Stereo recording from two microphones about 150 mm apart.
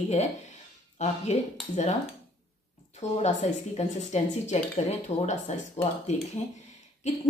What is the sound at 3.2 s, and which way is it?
Speech, 50° left (ahead or behind).